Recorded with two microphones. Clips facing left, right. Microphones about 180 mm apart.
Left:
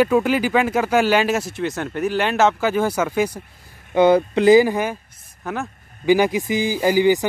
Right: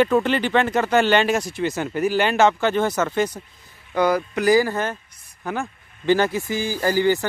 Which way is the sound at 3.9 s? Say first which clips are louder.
Left 6 dB; 25° left (ahead or behind).